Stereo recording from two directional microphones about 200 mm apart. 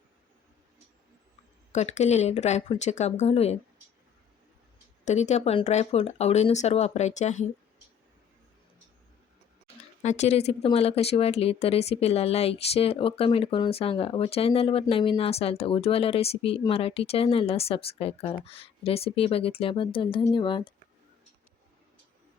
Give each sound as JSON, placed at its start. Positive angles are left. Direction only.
{"t": 1.7, "sound": "speech", "side_deg": 35}
{"t": 5.0, "sound": "speech", "side_deg": 35}
{"t": 10.0, "sound": "speech", "side_deg": 35}